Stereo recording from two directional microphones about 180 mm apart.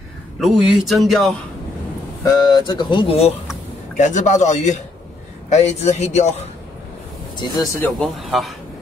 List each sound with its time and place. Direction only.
0.4 s speech: centre (ahead or behind)
2.2 s a man's voice: 25° left (ahead or behind); by 6.4 s 40° left (ahead or behind)
7.3 s speech: 20° left (ahead or behind)
8.0 s speech: centre (ahead or behind)